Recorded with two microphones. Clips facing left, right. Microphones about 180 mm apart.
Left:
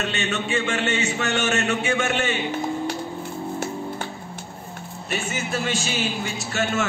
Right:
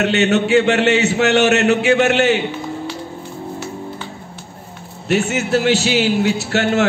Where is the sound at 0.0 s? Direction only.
70° right (ahead or behind).